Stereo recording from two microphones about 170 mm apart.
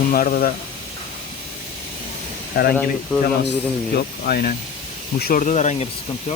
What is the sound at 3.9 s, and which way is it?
Speech, 65° left (ahead or behind).